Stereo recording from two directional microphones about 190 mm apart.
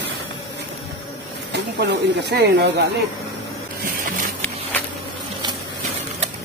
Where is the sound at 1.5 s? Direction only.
65° right (ahead or behind).